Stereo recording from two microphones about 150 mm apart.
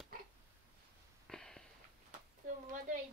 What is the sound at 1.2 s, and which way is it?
Sniff, 5° left (ahead or behind).